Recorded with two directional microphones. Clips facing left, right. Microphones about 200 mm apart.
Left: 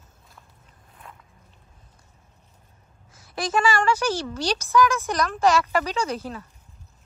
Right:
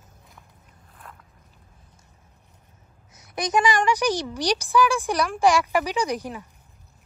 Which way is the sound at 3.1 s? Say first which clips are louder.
Right 1 dB; 20° right (ahead or behind).